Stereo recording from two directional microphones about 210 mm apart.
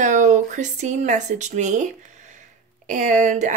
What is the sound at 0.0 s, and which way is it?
Speech, 35° right (ahead or behind).